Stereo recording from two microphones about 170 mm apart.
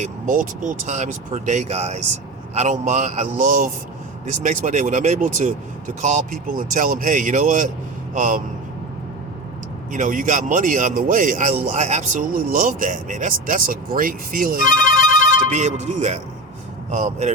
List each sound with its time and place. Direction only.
0.0 s speech: 50° right (ahead or behind)
9.9 s speech: 50° right (ahead or behind)
15.4 s speech: 45° right (ahead or behind)